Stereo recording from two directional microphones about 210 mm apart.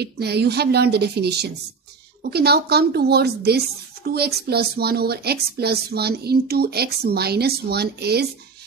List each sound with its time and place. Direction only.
0.0 s a woman's voice: 50° right (ahead or behind)